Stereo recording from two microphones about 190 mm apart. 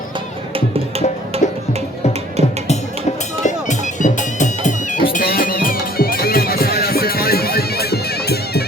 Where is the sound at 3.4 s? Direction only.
40° left (ahead or behind).